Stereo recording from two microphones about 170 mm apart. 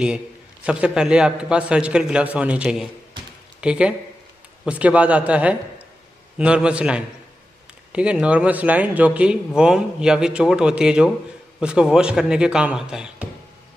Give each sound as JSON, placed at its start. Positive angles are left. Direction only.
{"t": 0.7, "sound": "a man's voice", "side_deg": -5}